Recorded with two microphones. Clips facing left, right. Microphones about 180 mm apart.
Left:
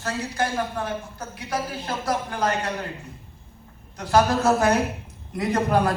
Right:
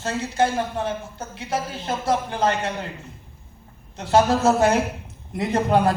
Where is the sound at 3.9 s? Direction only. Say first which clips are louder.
Right 2 dB; 25° right (ahead or behind).